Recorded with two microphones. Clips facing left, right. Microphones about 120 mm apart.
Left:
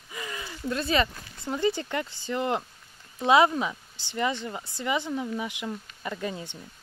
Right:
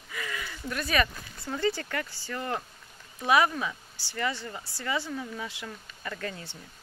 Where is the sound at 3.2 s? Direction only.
25° left (ahead or behind).